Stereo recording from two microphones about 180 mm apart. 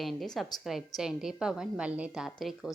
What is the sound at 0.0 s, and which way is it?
A woman's voice, centre (ahead or behind).